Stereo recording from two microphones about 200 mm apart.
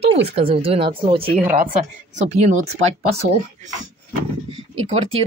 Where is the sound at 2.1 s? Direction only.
65° right (ahead or behind).